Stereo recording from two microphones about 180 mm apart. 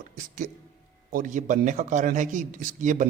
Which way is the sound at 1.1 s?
45° right (ahead or behind).